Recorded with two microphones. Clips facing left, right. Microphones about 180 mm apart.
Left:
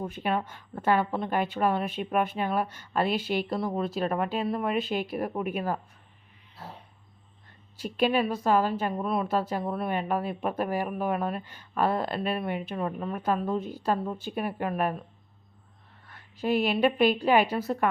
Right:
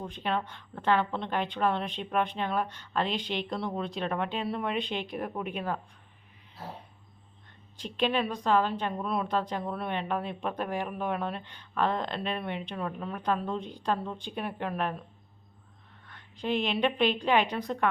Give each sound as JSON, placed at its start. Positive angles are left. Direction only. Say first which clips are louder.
{"t": 0.0, "sound": "a woman's voice", "louder": "left 3 dB", "side_deg": 10}
{"t": 7.8, "sound": "a woman's voice", "louder": "left 3 dB", "side_deg": 10}
{"t": 16.0, "sound": "a woman's voice", "louder": "left 4 dB", "side_deg": 5}